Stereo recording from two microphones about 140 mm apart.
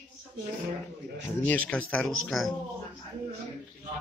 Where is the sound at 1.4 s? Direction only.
10° left (ahead or behind).